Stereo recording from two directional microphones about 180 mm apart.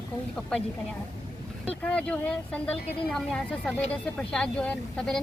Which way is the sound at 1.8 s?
5° left (ahead or behind).